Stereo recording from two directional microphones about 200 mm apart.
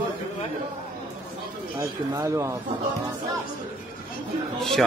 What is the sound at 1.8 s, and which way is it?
Speech, 15° right (ahead or behind).